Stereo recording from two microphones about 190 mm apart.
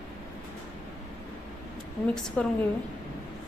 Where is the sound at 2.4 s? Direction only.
5° left (ahead or behind).